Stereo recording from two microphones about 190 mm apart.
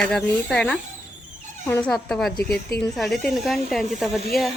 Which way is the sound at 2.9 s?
Centre (ahead or behind).